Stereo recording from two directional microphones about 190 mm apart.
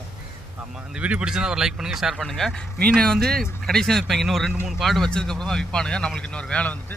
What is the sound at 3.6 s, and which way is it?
Speech, 5° left (ahead or behind).